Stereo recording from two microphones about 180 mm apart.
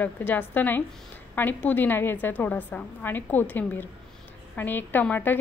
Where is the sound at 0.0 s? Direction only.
10° left (ahead or behind).